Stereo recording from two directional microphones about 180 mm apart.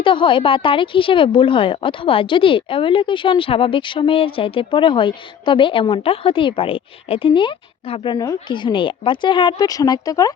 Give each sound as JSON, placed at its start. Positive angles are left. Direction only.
{"t": 0.0, "sound": "a woman's voice", "side_deg": 30}